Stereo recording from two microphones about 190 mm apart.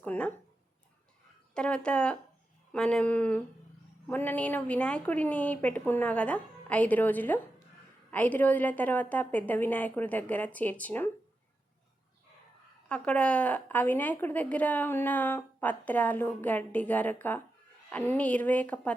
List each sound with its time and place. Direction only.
0.0 s speech: 10° left (ahead or behind)
1.5 s a woman's voice: 5° left (ahead or behind)
12.9 s a woman's voice: 5° left (ahead or behind)